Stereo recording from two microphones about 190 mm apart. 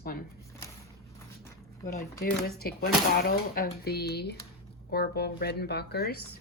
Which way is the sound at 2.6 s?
50° left (ahead or behind).